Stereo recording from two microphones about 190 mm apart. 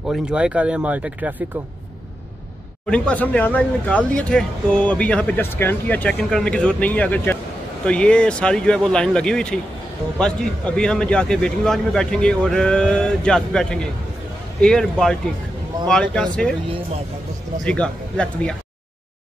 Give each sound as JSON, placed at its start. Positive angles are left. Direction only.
{"t": 0.1, "sound": "a man's voice", "side_deg": -5}
{"t": 2.9, "sound": "a man's voice", "side_deg": 5}
{"t": 17.6, "sound": "a man's voice", "side_deg": 5}